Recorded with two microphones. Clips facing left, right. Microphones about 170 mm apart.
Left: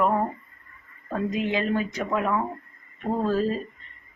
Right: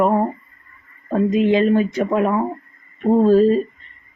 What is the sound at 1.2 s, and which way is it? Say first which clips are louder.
A woman's voice: right 10 dB; 25° right (ahead or behind).